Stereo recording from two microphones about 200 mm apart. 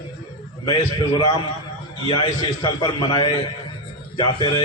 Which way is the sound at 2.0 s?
25° left (ahead or behind).